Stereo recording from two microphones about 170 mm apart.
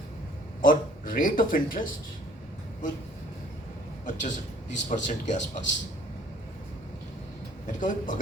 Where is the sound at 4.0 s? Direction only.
45° left (ahead or behind).